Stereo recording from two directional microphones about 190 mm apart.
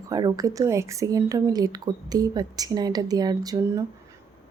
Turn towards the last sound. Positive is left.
turn(degrees=-20)  # may be behind; listen again after turning